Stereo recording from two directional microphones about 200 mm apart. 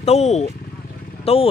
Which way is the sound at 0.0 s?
30° left (ahead or behind).